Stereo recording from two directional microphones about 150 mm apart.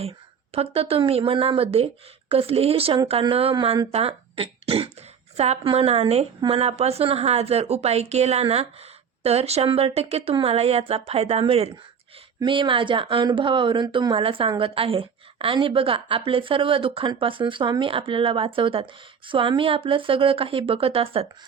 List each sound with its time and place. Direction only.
0.5 s a woman's voice: 40° right (ahead or behind)